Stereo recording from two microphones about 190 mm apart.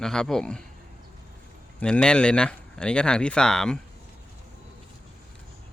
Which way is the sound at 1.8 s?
5° left (ahead or behind).